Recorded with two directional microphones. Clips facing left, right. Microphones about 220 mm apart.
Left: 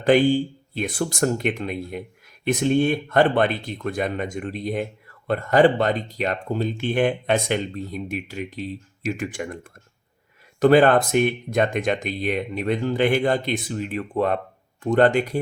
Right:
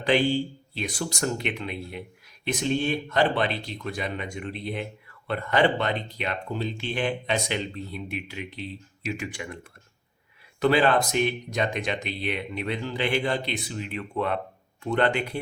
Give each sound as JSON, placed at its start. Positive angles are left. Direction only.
{"t": 0.0, "sound": "speech", "side_deg": 50}
{"t": 10.6, "sound": "speech", "side_deg": 50}